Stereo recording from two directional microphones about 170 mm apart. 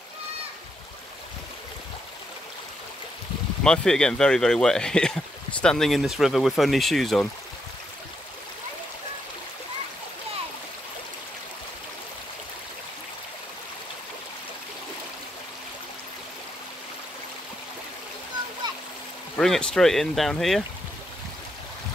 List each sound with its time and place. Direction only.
3.6 s speech: 5° left (ahead or behind)
19.3 s speech: 5° left (ahead or behind)